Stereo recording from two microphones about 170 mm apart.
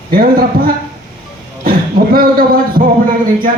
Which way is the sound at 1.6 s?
60° right (ahead or behind).